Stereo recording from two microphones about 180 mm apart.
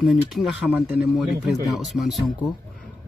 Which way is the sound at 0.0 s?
Centre (ahead or behind).